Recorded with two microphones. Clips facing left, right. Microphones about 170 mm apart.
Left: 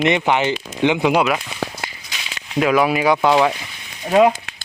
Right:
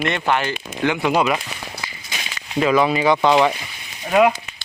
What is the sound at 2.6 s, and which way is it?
Speech, 5° left (ahead or behind).